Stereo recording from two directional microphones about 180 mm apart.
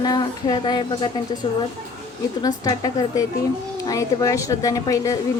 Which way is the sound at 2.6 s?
20° left (ahead or behind).